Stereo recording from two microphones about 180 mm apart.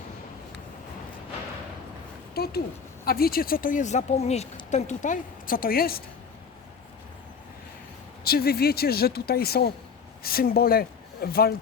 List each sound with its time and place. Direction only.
2.3 s a sound: 60° left (ahead or behind)
3.1 s speech: 55° left (ahead or behind)
8.2 s speech: 60° left (ahead or behind)